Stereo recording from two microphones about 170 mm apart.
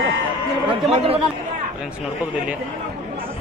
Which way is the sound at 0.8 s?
35° right (ahead or behind).